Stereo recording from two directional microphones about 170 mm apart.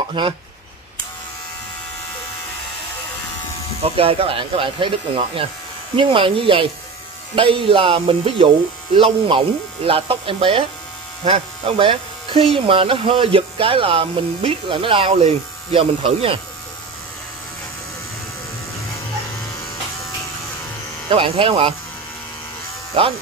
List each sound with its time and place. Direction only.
0.2 s speech: 25° right (ahead or behind)
3.8 s speech: 35° right (ahead or behind)
21.1 s speech: 30° right (ahead or behind)